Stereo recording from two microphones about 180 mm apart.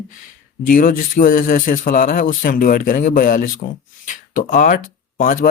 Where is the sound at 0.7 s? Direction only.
50° left (ahead or behind).